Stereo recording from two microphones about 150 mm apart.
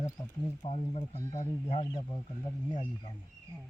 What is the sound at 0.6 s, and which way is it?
Speech, 40° left (ahead or behind).